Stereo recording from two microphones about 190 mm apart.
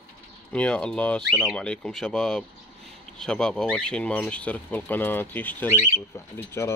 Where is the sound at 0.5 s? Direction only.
5° left (ahead or behind).